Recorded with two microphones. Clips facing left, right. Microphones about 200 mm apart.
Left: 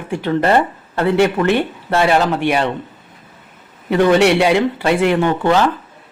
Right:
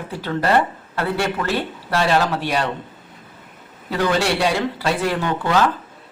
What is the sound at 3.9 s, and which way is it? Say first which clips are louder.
Speech: left 8 dB; 20° left (ahead or behind).